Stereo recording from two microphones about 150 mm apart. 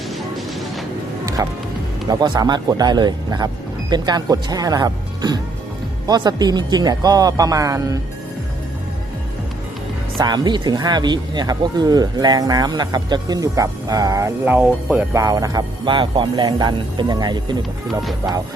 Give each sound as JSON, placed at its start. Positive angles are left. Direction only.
{"t": 1.2, "sound": "music", "side_deg": -25}
{"t": 2.0, "sound": "speech", "side_deg": -30}
{"t": 10.2, "sound": "speech", "side_deg": -30}
{"t": 15.2, "sound": "speech", "side_deg": -25}